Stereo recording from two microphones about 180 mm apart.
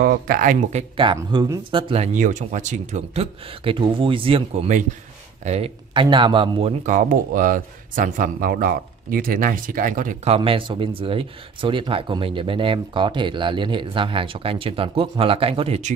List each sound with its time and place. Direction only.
0.0 s speech: 55° right (ahead or behind); by 1.0 s 40° right (ahead or behind)
1.0 s speech: 25° right (ahead or behind)
2.1 s speech: 45° right (ahead or behind); by 6.7 s 30° right (ahead or behind)
6.9 s speech: 45° right (ahead or behind)
10.3 s speech: 30° right (ahead or behind)